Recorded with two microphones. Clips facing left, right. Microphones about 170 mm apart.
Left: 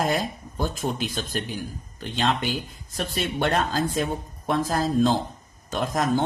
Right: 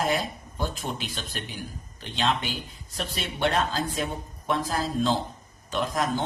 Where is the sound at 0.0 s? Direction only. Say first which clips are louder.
Left 2 dB; 45° left (ahead or behind).